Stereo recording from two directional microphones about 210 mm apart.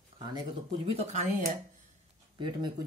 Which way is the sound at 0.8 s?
35° right (ahead or behind).